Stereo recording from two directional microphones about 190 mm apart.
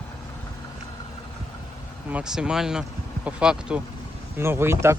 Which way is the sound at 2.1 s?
5° right (ahead or behind).